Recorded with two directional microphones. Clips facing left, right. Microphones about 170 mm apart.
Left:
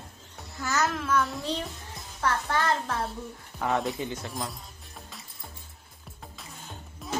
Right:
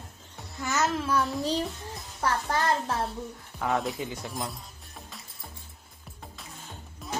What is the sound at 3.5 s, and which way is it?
Speech, centre (ahead or behind).